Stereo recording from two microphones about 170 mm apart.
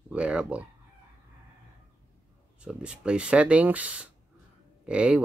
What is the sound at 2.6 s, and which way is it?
Speech, 5° right (ahead or behind).